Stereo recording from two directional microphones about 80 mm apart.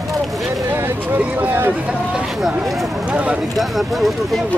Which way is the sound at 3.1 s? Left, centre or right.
Centre.